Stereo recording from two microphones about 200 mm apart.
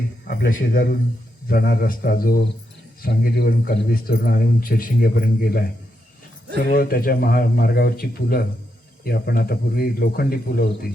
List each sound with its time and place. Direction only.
0.3 s a man's voice: 50° left (ahead or behind)
6.7 s a man's voice: 50° left (ahead or behind)